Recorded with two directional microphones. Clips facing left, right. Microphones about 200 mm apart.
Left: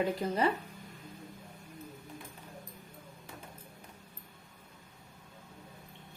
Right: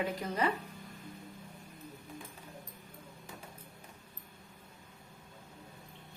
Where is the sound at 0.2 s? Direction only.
30° left (ahead or behind).